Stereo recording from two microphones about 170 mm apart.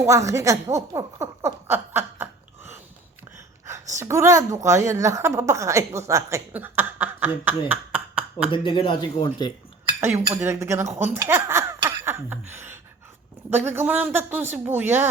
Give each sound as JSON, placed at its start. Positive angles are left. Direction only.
{"t": 0.0, "sound": "a woman's voice", "side_deg": -15}
{"t": 3.9, "sound": "a woman's voice", "side_deg": -15}
{"t": 8.4, "sound": "speech", "side_deg": 30}
{"t": 10.0, "sound": "a woman's voice", "side_deg": -15}
{"t": 12.0, "sound": "a sound", "side_deg": -15}
{"t": 13.5, "sound": "a woman's voice", "side_deg": -15}